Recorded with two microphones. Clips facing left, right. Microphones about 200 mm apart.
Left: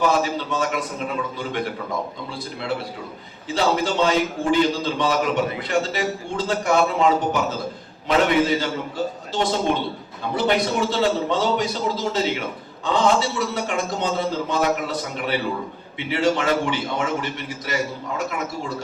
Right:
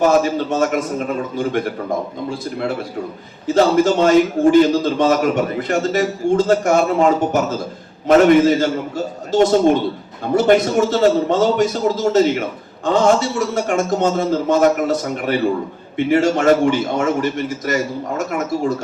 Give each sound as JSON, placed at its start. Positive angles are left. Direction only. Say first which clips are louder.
{"t": 0.0, "sound": "a man's voice", "louder": "right 6 dB", "side_deg": -45}
{"t": 3.4, "sound": "a man's voice", "louder": "right 8 dB", "side_deg": -45}